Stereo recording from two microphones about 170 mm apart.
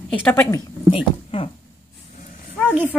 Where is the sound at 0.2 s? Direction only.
10° left (ahead or behind).